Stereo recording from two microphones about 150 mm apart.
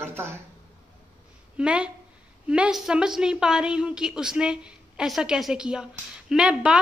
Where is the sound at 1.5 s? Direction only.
5° right (ahead or behind).